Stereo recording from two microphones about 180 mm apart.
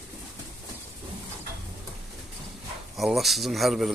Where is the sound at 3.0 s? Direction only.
Centre (ahead or behind).